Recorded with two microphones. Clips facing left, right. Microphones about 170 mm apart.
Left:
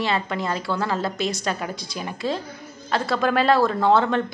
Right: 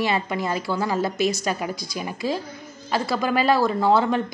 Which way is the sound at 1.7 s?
40° right (ahead or behind).